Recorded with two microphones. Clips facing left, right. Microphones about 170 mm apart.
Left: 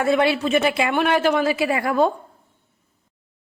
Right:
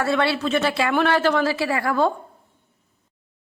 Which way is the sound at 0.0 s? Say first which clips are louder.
Left 3 dB; 15° left (ahead or behind).